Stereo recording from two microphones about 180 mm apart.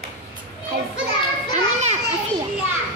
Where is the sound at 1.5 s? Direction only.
40° right (ahead or behind).